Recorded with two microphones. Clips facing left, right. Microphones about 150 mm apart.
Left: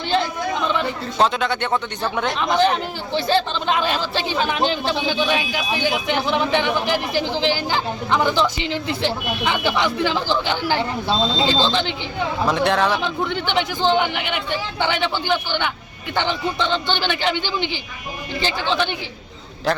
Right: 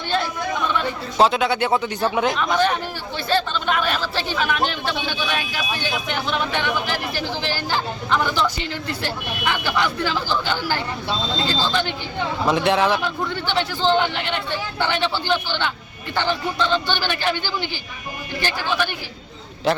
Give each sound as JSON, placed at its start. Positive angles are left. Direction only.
{"t": 1.2, "sound": "speech", "side_deg": -5}
{"t": 2.4, "sound": "speech", "side_deg": 20}
{"t": 12.5, "sound": "speech", "side_deg": 0}
{"t": 13.0, "sound": "speech", "side_deg": 20}
{"t": 19.7, "sound": "a man's voice", "side_deg": 0}